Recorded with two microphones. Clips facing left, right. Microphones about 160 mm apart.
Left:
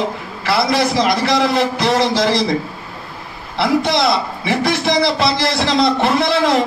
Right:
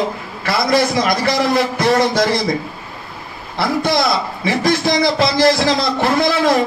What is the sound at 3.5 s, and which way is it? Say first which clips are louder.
A man's voice: left 1 dB; 70° left (ahead or behind).